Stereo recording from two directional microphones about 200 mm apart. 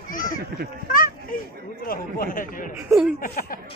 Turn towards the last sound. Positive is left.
turn(degrees=45)  # may be behind; listen again after turning